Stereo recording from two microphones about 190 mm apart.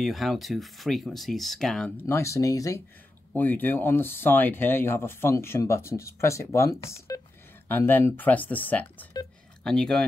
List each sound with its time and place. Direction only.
0.0 s speech: centre (ahead or behind)
2.0 s speech: 15° left (ahead or behind)
7.1 s telephone dialing: 20° left (ahead or behind)
7.6 s speech: 10° left (ahead or behind)